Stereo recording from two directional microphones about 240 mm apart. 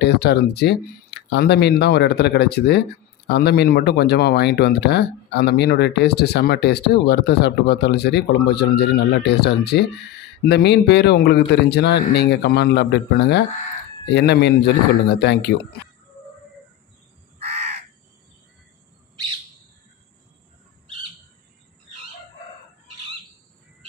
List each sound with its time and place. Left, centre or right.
0.0 s speech: left
17.4 s crow: right